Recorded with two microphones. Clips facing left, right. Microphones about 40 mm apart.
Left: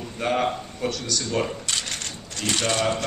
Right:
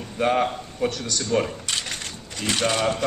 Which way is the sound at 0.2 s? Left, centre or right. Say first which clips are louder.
Right 2 dB; centre.